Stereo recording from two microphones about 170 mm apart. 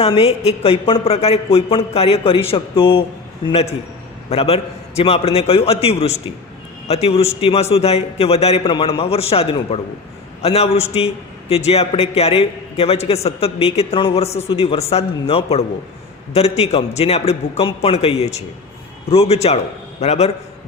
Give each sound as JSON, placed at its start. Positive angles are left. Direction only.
{"t": 0.0, "sound": "a man's voice", "side_deg": 35}